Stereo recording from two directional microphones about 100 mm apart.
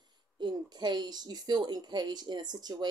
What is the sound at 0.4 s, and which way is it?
A woman's voice, 45° right (ahead or behind).